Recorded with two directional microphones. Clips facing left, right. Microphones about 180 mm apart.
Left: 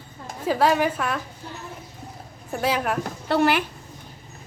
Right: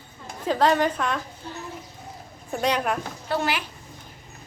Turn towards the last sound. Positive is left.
turn(degrees=60)  # may be behind; listen again after turning